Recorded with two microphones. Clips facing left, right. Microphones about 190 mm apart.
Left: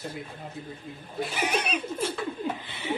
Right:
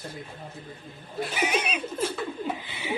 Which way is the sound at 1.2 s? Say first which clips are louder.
Right 1 dB; centre (ahead or behind).